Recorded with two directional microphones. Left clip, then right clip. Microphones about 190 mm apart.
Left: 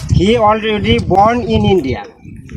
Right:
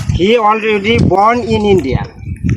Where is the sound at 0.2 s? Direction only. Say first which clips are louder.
Right 1 dB; 65° left (ahead or behind).